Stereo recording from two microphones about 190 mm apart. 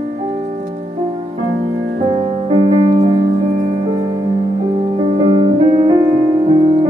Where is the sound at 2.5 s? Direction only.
35° right (ahead or behind).